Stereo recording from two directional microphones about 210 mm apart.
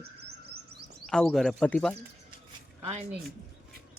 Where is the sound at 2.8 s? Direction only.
30° right (ahead or behind).